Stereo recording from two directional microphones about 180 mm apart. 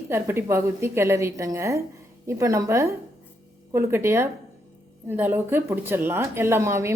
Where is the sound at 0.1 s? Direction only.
15° right (ahead or behind).